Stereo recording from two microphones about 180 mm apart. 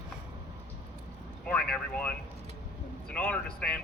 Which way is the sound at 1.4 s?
5° left (ahead or behind).